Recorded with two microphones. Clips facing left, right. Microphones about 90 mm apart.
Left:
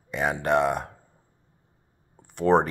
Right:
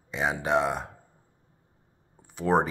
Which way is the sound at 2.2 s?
Centre (ahead or behind).